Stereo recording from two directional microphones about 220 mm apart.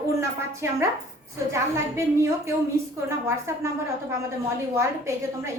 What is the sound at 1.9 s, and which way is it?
A woman's voice, 10° right (ahead or behind).